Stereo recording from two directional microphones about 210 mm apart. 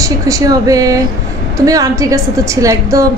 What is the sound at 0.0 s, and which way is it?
A woman's voice, 15° right (ahead or behind).